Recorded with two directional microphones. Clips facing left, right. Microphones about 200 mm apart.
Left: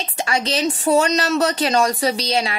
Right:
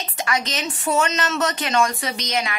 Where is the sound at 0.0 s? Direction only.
30° left (ahead or behind).